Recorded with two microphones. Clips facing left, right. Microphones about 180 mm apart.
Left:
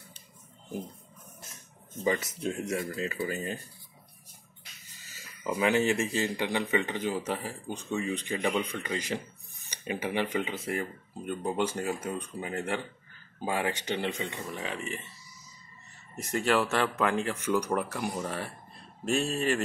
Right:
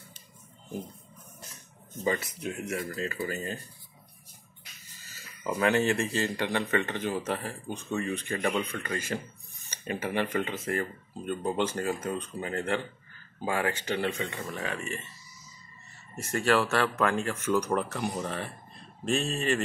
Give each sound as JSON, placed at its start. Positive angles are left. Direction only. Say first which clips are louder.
{"t": 2.4, "sound": "speech", "louder": "left 4 dB", "side_deg": 25}
{"t": 5.1, "sound": "a sound", "louder": "right 1 dB", "side_deg": 15}
{"t": 5.6, "sound": "speech", "louder": "even", "side_deg": 15}
{"t": 16.2, "sound": "speech", "louder": "right 1 dB", "side_deg": 15}